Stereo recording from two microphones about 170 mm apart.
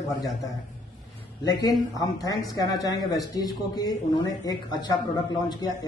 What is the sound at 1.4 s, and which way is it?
A man's voice, 25° left (ahead or behind).